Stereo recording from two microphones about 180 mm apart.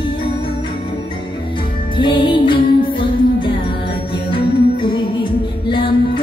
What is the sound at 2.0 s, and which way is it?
Music, 25° left (ahead or behind).